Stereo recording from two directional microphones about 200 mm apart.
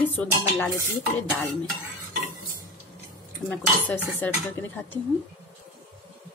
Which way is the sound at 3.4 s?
10° left (ahead or behind).